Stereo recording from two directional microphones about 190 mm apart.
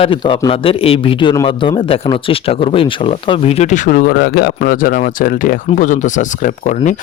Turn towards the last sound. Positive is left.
turn(degrees=40)  # may be behind; listen again after turning